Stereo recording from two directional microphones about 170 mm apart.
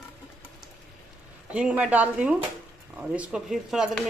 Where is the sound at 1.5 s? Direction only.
5° right (ahead or behind).